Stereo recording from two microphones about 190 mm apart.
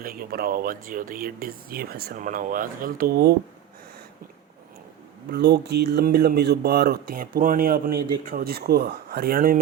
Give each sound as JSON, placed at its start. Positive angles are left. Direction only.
{"t": 0.0, "sound": "speech", "side_deg": -50}
{"t": 5.3, "sound": "speech", "side_deg": -60}